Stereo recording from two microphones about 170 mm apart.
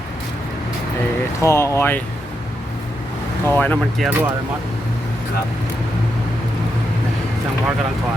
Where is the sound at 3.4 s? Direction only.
10° left (ahead or behind).